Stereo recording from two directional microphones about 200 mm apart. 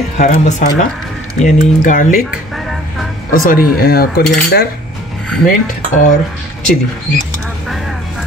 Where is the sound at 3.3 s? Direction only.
45° left (ahead or behind).